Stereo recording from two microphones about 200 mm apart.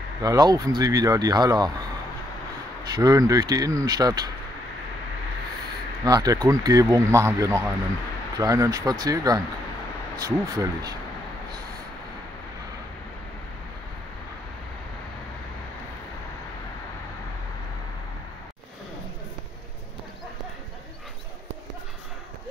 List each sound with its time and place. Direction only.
0.2 s speech: 20° right (ahead or behind)
3.0 s speech: 15° right (ahead or behind)
6.0 s a man's voice: 20° right (ahead or behind)